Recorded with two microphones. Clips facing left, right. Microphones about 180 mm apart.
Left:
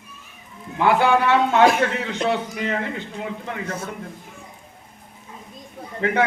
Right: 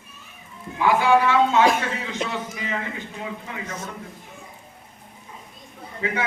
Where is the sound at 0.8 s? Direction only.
65° left (ahead or behind).